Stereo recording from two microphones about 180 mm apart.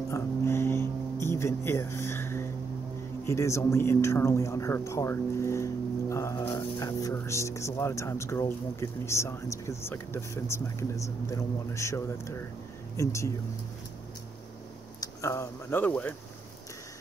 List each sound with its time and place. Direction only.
0.1 s a sound: 15° left (ahead or behind)
1.2 s music: 15° left (ahead or behind)
3.3 s speech: 15° left (ahead or behind)
15.0 s speech: 15° left (ahead or behind)